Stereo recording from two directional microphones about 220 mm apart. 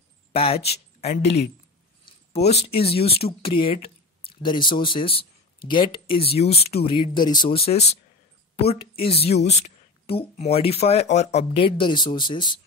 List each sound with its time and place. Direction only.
0.3 s speech: 25° left (ahead or behind)
1.2 s speech: 50° left (ahead or behind)
2.0 s a sound: 30° left (ahead or behind)
2.8 s speech: 25° left (ahead or behind)
9.0 s speech: 25° left (ahead or behind)